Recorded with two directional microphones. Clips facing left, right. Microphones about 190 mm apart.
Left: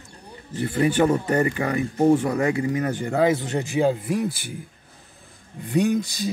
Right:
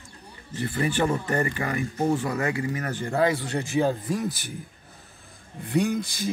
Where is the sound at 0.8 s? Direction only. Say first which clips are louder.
Left 6 dB; 15° left (ahead or behind).